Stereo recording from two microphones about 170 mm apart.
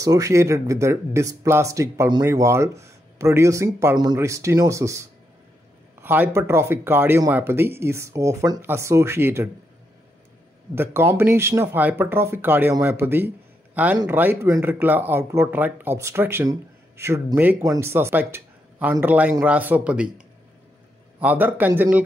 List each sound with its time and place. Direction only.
0.0 s speech: 20° right (ahead or behind)
10.7 s speech: 15° right (ahead or behind)
21.2 s speech: 10° right (ahead or behind)